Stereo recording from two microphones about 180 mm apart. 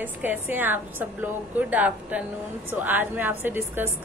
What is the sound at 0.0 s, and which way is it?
A woman's voice, 10° right (ahead or behind).